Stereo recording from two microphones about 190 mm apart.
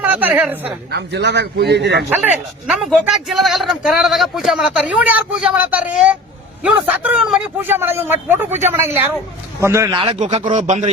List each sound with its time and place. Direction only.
0.0 s a man's voice: 10° right (ahead or behind)
0.9 s a man's voice: 60° right (ahead or behind)
2.0 s a man's voice: 5° right (ahead or behind)
9.9 s a man's voice: 25° right (ahead or behind)